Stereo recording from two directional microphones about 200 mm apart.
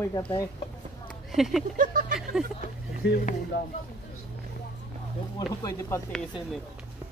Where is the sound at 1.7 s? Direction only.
40° right (ahead or behind).